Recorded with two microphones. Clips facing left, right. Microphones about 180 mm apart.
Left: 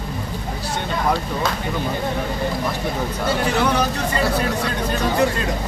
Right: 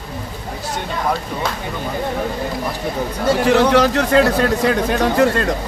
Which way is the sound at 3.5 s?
80° right.